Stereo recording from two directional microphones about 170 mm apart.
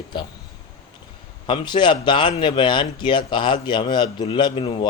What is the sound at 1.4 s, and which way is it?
Speech, 25° left (ahead or behind).